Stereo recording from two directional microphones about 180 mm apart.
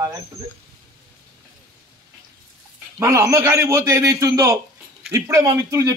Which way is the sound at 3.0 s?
15° right (ahead or behind).